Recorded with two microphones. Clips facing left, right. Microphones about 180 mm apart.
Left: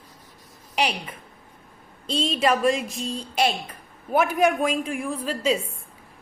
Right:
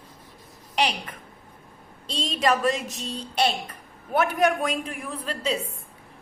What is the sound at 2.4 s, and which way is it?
Speech, 10° left (ahead or behind).